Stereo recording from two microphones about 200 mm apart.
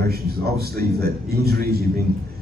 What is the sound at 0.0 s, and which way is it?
A man's voice, 50° right (ahead or behind).